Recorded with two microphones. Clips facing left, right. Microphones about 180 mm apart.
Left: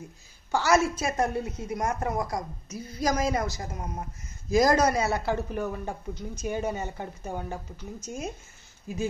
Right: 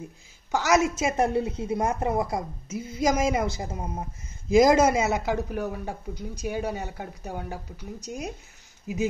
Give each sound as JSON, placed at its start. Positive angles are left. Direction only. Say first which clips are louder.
{"t": 0.5, "sound": "a woman's voice", "louder": "right 1 dB", "side_deg": -20}